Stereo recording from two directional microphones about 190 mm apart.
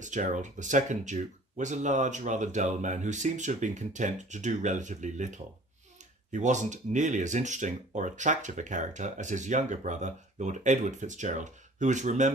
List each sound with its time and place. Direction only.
0.0 s speech: 40° right (ahead or behind)